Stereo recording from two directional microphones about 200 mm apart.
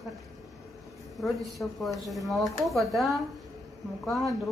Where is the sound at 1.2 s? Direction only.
Centre (ahead or behind).